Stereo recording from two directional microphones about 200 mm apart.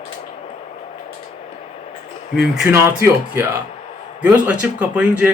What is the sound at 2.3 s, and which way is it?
Speech, 5° right (ahead or behind).